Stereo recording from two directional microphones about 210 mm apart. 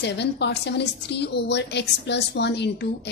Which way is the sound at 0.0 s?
55° left (ahead or behind).